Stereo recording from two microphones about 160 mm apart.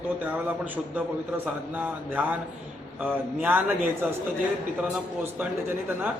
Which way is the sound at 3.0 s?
10° right (ahead or behind).